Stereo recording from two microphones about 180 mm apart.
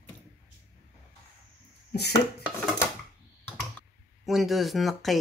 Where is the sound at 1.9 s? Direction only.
65° left (ahead or behind).